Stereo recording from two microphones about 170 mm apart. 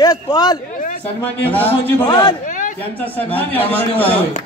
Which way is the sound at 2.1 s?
25° left (ahead or behind).